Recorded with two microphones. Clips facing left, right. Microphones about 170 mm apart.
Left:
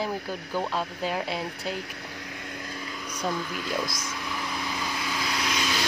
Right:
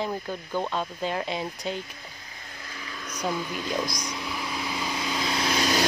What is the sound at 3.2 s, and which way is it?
Speech, 15° right (ahead or behind).